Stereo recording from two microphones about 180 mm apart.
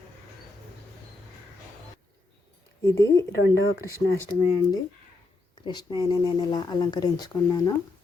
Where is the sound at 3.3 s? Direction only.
65° left (ahead or behind).